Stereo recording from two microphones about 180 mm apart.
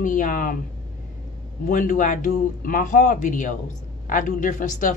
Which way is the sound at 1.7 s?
45° left (ahead or behind).